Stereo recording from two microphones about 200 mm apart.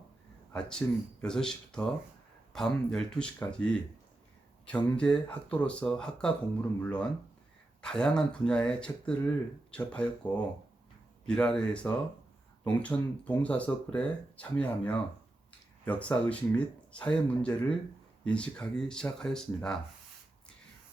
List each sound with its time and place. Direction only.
0.8 s speech: 10° left (ahead or behind)